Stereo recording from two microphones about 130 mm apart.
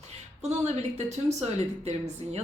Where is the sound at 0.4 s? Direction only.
60° right (ahead or behind).